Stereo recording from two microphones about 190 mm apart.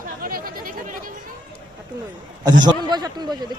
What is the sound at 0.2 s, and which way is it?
Chatter, 50° right (ahead or behind).